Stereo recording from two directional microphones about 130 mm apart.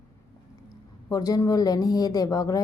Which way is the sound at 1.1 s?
30° left (ahead or behind).